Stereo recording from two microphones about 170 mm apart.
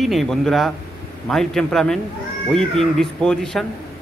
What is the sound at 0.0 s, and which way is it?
A man's voice, centre (ahead or behind).